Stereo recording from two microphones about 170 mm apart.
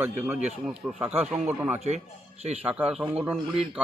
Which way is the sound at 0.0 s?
10° right (ahead or behind).